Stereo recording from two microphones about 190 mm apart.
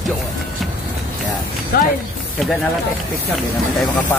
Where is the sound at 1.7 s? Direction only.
50° left (ahead or behind).